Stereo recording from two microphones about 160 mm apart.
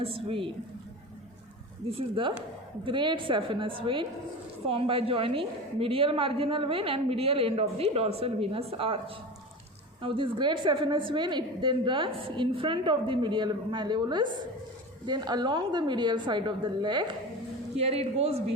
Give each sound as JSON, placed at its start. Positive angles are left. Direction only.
{"t": 0.0, "sound": "a woman's voice", "side_deg": -35}
{"t": 1.9, "sound": "a woman's voice", "side_deg": -35}
{"t": 17.7, "sound": "a woman's voice", "side_deg": -40}